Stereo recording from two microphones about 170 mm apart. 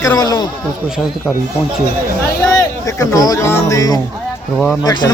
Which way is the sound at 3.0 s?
20° left (ahead or behind).